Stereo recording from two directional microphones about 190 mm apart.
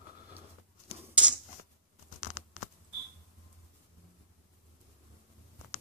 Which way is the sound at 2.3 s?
45° left (ahead or behind).